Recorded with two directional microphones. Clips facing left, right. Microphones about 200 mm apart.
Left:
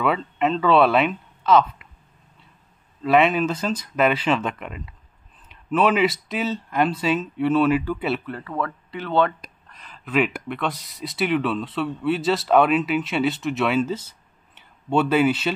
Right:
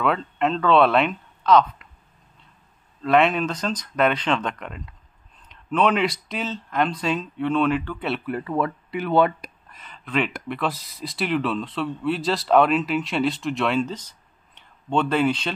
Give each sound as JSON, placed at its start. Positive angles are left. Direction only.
{"t": 0.0, "sound": "speech", "side_deg": 5}
{"t": 3.0, "sound": "speech", "side_deg": 5}
{"t": 8.3, "sound": "speech", "side_deg": -15}